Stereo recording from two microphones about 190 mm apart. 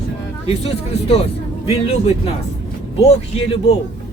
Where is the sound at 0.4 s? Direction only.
30° left (ahead or behind).